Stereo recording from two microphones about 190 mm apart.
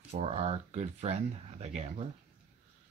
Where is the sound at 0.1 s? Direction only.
35° right (ahead or behind).